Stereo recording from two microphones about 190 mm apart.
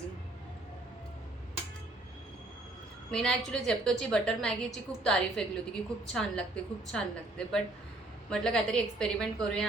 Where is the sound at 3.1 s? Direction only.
5° left (ahead or behind).